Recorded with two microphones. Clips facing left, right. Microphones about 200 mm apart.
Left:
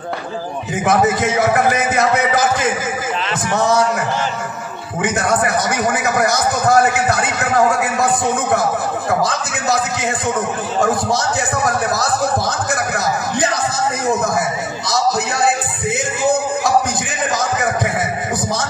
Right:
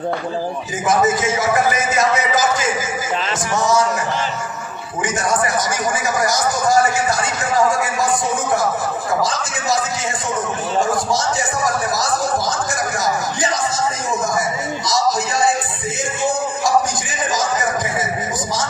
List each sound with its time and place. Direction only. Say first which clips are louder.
0.8 s a man's voice: left 1 dB; 60° left (ahead or behind)
5.0 s a man's voice: left 2 dB; 60° left (ahead or behind)
9.2 s a man's voice: left 2 dB; 60° left (ahead or behind)